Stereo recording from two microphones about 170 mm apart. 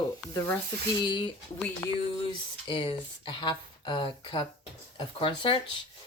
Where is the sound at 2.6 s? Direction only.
30° left (ahead or behind).